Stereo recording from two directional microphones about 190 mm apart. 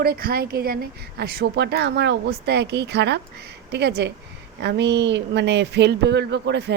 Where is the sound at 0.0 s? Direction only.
50° right (ahead or behind).